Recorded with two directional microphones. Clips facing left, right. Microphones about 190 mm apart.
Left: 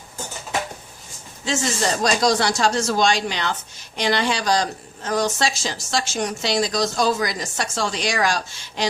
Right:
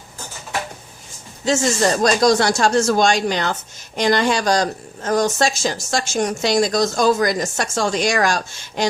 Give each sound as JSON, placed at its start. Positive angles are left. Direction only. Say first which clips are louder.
{"t": 1.5, "sound": "speech", "louder": "right 5 dB", "side_deg": -45}